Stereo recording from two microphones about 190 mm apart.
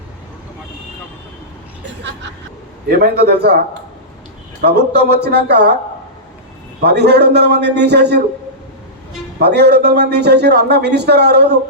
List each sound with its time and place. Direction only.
2.9 s a man's voice: 55° right (ahead or behind)
4.6 s a man's voice: 60° right (ahead or behind)
6.8 s a man's voice: 60° right (ahead or behind)
9.4 s a man's voice: 60° right (ahead or behind)